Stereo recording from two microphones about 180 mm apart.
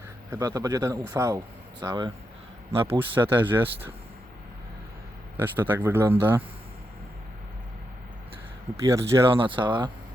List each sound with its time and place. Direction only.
0.3 s speech: 20° right (ahead or behind)
3.3 s speech: 10° right (ahead or behind)
5.4 s speech: 10° right (ahead or behind)
8.7 s speech: 15° right (ahead or behind)
9.3 s speech: 25° right (ahead or behind)